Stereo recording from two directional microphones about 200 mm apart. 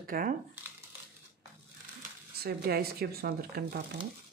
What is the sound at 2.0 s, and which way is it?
Speech, 50° right (ahead or behind).